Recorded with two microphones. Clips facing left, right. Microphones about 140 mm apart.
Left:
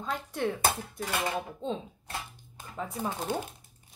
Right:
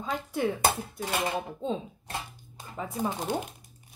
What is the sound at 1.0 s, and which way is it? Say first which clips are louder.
Speech: right 2 dB; 25° right (ahead or behind).